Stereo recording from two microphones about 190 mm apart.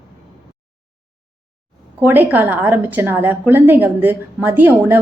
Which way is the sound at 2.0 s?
10° right (ahead or behind).